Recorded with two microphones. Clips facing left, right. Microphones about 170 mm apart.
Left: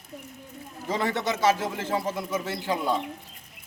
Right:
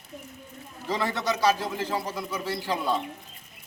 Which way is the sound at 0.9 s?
20° left (ahead or behind).